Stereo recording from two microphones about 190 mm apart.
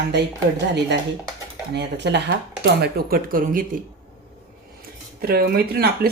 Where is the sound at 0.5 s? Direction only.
65° right (ahead or behind).